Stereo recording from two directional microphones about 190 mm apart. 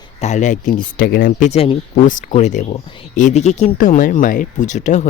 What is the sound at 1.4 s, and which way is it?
Speech, 35° left (ahead or behind).